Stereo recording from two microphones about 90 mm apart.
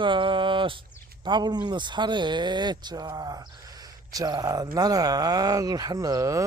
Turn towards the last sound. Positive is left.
turn(degrees=-40)  # may be behind; listen again after turning